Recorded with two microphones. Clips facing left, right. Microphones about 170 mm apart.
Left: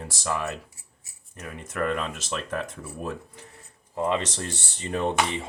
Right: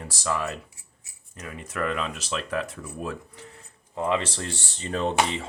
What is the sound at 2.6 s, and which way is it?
Speech, 20° left (ahead or behind).